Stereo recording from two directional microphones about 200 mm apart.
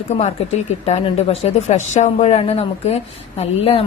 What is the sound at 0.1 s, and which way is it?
Speech, 35° left (ahead or behind).